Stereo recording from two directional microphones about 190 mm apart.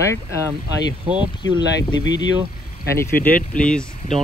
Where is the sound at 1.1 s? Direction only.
5° right (ahead or behind).